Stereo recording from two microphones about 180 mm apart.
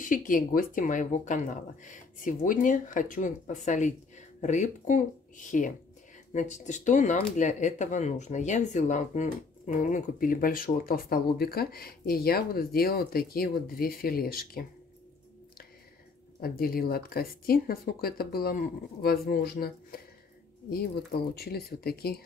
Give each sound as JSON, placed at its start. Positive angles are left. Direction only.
{"t": 0.0, "sound": "speech", "side_deg": 50}
{"t": 6.3, "sound": "speech", "side_deg": 40}
{"t": 16.3, "sound": "speech", "side_deg": 55}